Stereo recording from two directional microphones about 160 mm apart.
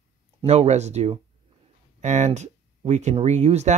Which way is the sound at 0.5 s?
45° right (ahead or behind).